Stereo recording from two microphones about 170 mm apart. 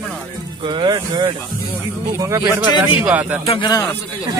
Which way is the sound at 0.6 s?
30° right (ahead or behind).